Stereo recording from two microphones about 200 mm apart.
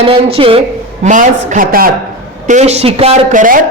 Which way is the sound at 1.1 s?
40° right (ahead or behind).